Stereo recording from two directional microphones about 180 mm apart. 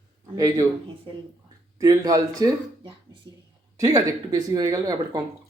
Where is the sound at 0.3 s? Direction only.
20° right (ahead or behind).